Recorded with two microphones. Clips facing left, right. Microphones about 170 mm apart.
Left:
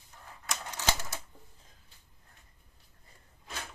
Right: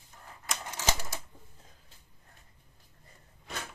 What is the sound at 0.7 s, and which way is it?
Typewriter, 10° right (ahead or behind).